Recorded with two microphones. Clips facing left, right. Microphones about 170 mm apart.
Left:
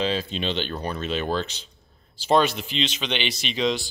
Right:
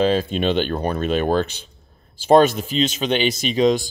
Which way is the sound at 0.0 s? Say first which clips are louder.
Right 7 dB; 50° right (ahead or behind).